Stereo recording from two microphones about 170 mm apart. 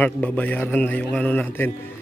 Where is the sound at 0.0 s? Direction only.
10° left (ahead or behind).